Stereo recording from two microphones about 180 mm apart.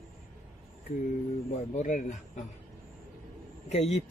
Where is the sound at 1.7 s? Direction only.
45° left (ahead or behind).